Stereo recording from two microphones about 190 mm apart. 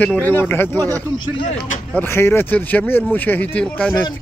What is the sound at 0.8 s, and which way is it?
Speech, 15° right (ahead or behind).